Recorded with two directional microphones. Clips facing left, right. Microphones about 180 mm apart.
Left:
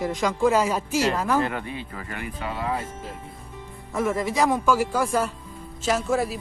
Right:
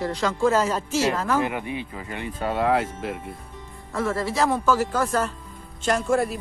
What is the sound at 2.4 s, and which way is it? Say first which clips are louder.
Speech: right 7 dB; 60° right (ahead or behind).